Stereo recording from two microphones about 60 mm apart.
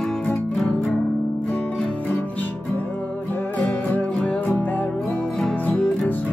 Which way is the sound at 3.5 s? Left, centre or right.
Left.